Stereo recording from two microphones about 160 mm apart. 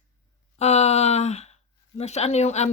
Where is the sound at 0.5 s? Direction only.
45° left (ahead or behind).